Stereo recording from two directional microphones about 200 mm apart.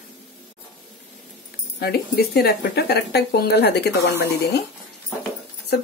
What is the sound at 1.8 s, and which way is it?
Speech, 50° left (ahead or behind).